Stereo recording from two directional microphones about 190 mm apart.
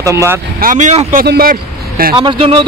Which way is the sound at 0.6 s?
40° right (ahead or behind).